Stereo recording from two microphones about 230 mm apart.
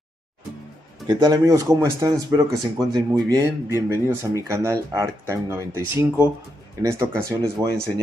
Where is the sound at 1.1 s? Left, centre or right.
Centre.